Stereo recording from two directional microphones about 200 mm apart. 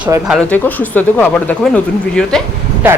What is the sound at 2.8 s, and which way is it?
Speech, 10° right (ahead or behind).